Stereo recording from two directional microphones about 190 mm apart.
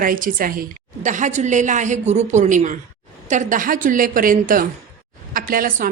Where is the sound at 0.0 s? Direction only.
45° right (ahead or behind).